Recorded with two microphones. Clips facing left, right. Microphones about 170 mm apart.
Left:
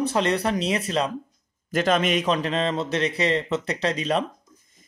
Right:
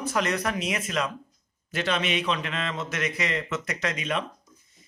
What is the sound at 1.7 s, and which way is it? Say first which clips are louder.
Speech: left 6 dB; 45° left (ahead or behind).